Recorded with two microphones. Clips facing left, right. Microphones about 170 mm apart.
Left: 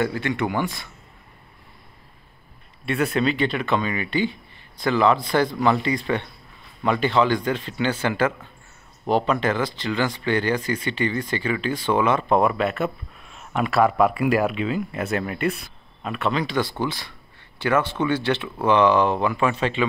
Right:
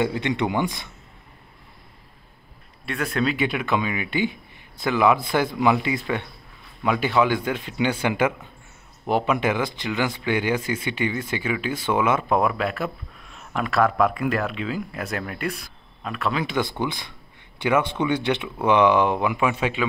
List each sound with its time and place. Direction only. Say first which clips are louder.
0.0 s speech: right 1 dB; 20° right (ahead or behind)
2.8 s speech: left 3 dB; 5° left (ahead or behind)
16.8 s speech: left 1 dB; 15° right (ahead or behind)